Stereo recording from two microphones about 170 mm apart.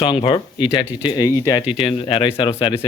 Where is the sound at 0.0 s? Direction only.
30° left (ahead or behind).